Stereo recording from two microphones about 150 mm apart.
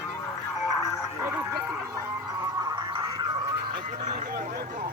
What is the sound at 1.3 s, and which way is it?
Bow-wow, 15° right (ahead or behind).